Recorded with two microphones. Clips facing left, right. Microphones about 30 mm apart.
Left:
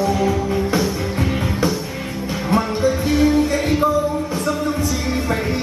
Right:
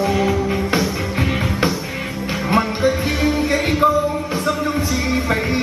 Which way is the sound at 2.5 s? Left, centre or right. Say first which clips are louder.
Right 1 dB; right.